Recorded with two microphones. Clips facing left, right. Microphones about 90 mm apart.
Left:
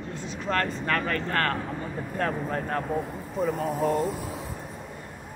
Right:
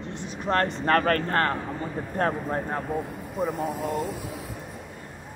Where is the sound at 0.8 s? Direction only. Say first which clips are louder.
Right 5 dB; 50° right (ahead or behind).